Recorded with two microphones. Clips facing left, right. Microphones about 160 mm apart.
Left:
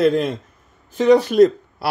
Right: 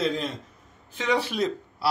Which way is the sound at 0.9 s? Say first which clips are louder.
Left 13 dB; 45° left (ahead or behind).